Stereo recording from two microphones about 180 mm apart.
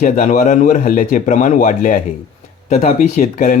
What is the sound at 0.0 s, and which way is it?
Speech, 45° left (ahead or behind).